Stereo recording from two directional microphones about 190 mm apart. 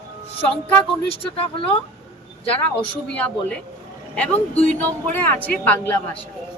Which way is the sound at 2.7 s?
5° left (ahead or behind).